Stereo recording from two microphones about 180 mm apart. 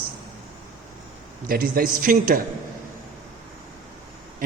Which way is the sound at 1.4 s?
55° right (ahead or behind).